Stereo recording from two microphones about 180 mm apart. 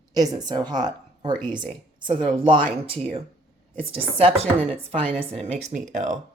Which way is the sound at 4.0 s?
30° right (ahead or behind).